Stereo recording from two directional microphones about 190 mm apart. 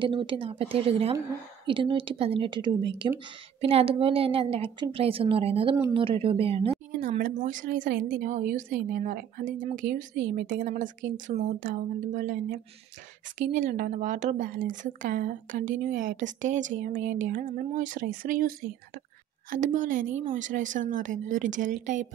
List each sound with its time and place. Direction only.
0.0 s a woman's voice: 25° right (ahead or behind)
7.0 s a woman's voice: 45° right (ahead or behind)